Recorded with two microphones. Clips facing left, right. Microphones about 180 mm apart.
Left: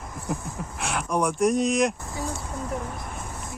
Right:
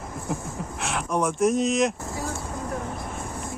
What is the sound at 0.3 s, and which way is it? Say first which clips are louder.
Speech: even; centre (ahead or behind).